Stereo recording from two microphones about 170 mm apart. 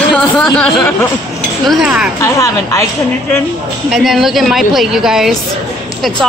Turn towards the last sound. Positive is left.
turn(degrees=0)  # may be behind; listen again after turning